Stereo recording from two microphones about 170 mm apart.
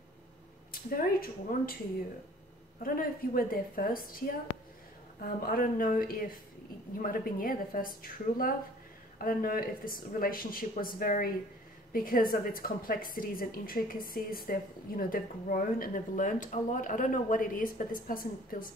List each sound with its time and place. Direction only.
0.7 s a woman's voice: 60° left (ahead or behind)
3.3 s a woman's voice: 55° left (ahead or behind)